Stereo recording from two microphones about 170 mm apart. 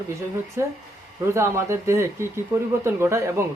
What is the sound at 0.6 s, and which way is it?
Speech, 15° right (ahead or behind).